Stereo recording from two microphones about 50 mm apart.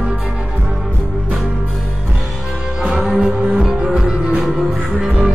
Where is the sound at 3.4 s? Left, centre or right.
Right.